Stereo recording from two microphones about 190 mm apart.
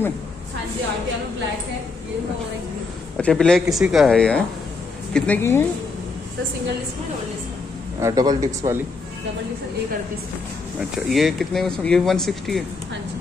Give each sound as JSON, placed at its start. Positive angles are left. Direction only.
{"t": 3.2, "sound": "speech", "side_deg": 5}
{"t": 8.0, "sound": "speech", "side_deg": -20}
{"t": 10.8, "sound": "speech", "side_deg": 0}